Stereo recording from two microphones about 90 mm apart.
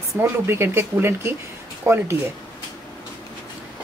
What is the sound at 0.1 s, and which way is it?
Speech, 25° right (ahead or behind).